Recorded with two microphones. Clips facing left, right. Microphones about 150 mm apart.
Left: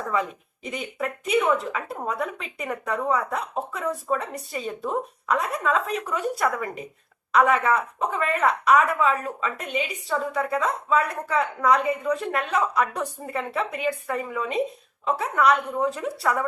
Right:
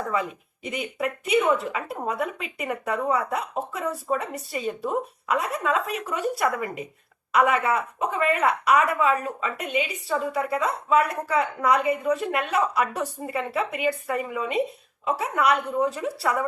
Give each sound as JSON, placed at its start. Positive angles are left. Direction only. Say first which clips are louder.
{"t": 0.2, "sound": "speech", "louder": "left 2 dB", "side_deg": -5}